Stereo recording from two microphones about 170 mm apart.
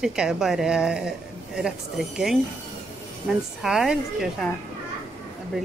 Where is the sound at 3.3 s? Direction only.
Centre (ahead or behind).